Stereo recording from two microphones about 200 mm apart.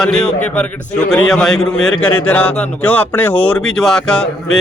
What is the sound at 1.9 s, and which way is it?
Speech, 90° left.